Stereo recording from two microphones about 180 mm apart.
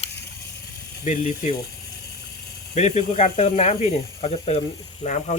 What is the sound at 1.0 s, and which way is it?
Speech, 45° left (ahead or behind).